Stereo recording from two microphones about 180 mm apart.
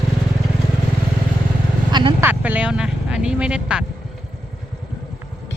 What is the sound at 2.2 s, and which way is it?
Speech, 10° right (ahead or behind).